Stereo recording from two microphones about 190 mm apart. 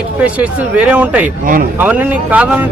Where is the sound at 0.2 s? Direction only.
5° right (ahead or behind).